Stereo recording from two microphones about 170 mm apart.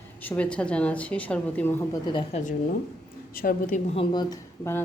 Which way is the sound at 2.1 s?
30° left (ahead or behind).